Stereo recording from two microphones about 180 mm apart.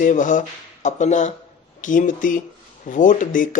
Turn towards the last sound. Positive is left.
turn(degrees=45)  # may be behind; listen again after turning